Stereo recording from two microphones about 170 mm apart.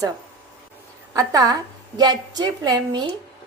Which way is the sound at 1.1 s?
20° right (ahead or behind).